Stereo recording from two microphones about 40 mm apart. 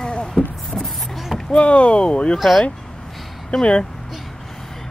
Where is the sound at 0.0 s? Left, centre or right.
Left.